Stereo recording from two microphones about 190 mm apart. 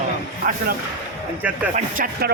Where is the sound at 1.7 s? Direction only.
45° right (ahead or behind).